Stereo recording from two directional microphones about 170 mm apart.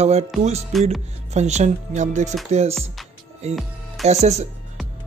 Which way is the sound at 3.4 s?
40° right (ahead or behind).